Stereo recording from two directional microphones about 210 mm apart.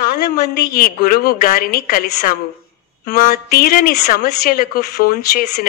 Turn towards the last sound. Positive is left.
turn(degrees=45)  # may be behind; listen again after turning